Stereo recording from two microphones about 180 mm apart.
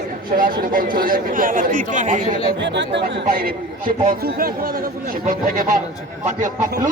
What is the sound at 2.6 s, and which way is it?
A man's voice, 75° right (ahead or behind).